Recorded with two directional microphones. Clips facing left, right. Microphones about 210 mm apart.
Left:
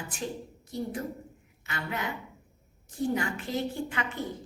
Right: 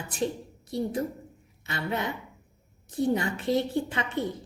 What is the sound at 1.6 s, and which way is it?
Speech, 30° right (ahead or behind).